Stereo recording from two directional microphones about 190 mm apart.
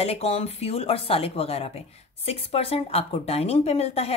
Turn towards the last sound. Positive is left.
turn(degrees=30)  # may be behind; listen again after turning